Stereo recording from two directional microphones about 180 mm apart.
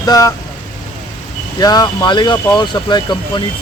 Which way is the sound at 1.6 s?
20° left (ahead or behind).